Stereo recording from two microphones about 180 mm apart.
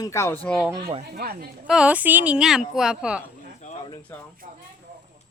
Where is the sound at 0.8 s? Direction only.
35° right (ahead or behind).